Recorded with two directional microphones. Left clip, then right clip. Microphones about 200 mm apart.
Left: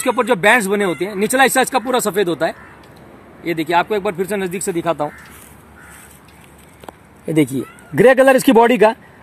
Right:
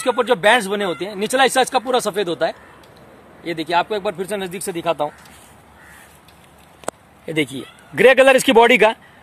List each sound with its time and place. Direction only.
0.1 s speech: 5° right (ahead or behind)
7.2 s speech: 30° left (ahead or behind)